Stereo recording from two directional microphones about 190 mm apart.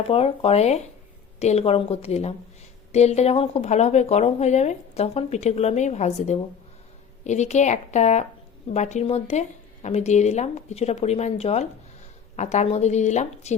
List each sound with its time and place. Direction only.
0.1 s speech: 30° left (ahead or behind)